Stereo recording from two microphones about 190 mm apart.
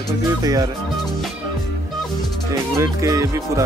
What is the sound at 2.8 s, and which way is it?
Music, 15° right (ahead or behind).